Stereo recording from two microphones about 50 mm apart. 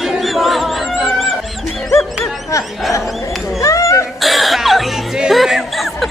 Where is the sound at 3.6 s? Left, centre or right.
Left.